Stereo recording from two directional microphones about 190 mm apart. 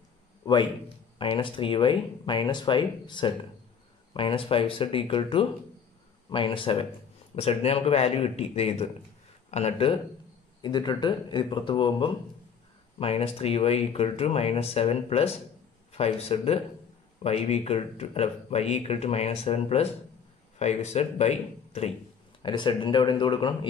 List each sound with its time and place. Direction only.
0.5 s speech: 25° left (ahead or behind)
22.4 s speech: 25° left (ahead or behind)